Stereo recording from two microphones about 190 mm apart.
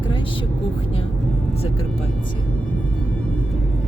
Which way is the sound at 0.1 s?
25° left (ahead or behind).